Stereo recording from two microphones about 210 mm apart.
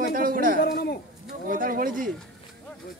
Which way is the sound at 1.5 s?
40° right (ahead or behind).